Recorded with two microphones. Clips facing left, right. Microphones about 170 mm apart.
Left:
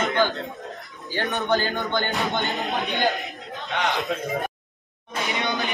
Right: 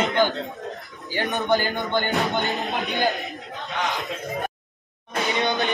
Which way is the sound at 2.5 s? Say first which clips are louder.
Even; centre (ahead or behind).